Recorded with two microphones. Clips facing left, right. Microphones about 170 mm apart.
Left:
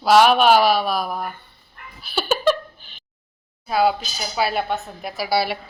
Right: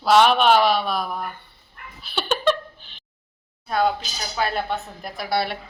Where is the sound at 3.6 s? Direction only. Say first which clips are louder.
Left 3 dB; 5° left (ahead or behind).